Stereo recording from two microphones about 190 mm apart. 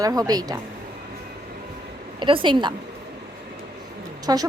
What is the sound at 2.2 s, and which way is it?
Speech, 25° right (ahead or behind).